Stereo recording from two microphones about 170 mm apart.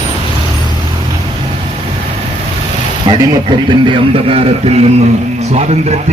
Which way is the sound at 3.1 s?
25° right (ahead or behind).